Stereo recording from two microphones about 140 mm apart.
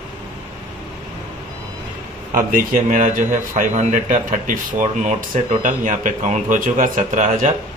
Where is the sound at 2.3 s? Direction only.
75° right (ahead or behind).